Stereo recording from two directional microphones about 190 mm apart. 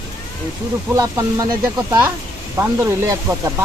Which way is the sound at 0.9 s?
15° right (ahead or behind).